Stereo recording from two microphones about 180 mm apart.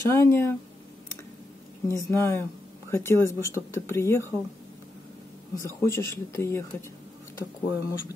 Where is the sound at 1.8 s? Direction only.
15° left (ahead or behind).